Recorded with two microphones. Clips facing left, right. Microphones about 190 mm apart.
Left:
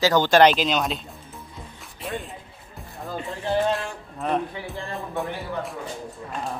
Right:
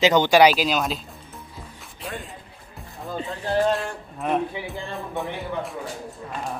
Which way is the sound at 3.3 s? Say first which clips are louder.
Right 1 dB; centre (ahead or behind).